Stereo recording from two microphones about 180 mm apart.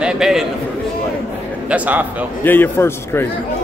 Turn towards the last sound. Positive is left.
turn(degrees=10)  # may be behind; listen again after turning